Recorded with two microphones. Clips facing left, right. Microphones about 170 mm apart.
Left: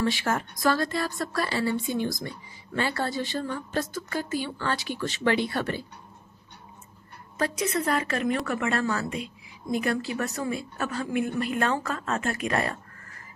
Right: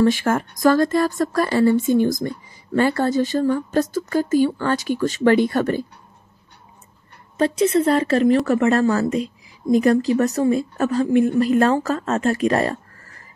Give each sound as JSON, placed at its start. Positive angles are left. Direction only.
{"t": 0.0, "sound": "speech", "side_deg": -45}
{"t": 7.3, "sound": "a woman's voice", "side_deg": -25}